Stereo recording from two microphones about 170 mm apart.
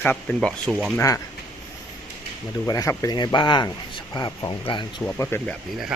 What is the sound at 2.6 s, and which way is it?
Speech, 20° left (ahead or behind).